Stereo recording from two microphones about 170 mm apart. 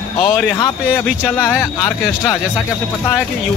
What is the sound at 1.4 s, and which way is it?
Speech, 15° left (ahead or behind).